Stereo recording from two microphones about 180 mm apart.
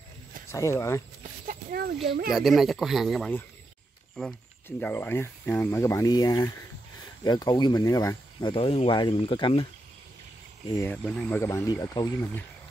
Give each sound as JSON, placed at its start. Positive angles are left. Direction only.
{"t": 0.5, "sound": "speech", "side_deg": 15}
{"t": 1.5, "sound": "a sound", "side_deg": -55}
{"t": 2.3, "sound": "speech", "side_deg": 0}
{"t": 4.6, "sound": "speech", "side_deg": 10}
{"t": 10.8, "sound": "speech", "side_deg": 5}